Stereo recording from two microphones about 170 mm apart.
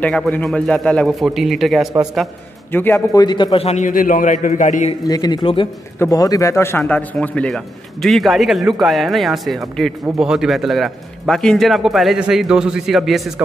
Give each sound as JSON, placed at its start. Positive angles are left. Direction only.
{"t": 0.0, "sound": "a man's voice", "side_deg": 10}
{"t": 2.7, "sound": "a man's voice", "side_deg": 15}
{"t": 5.0, "sound": "a man's voice", "side_deg": 20}